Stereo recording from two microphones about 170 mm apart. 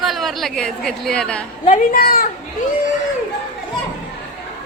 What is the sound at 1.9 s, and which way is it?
Speech, 60° left (ahead or behind).